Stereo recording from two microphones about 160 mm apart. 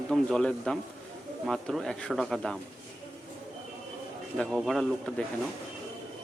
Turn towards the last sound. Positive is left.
turn(degrees=0)  # may be behind; listen again after turning